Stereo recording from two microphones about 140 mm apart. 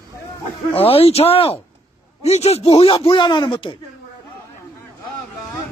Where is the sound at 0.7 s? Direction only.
40° left (ahead or behind).